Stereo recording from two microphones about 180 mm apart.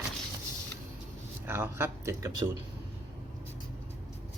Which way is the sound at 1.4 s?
15° right (ahead or behind).